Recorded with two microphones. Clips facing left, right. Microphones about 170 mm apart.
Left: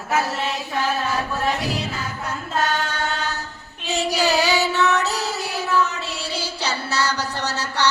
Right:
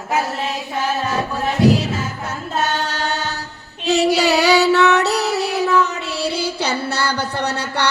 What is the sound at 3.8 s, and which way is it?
Child singing, 70° right (ahead or behind).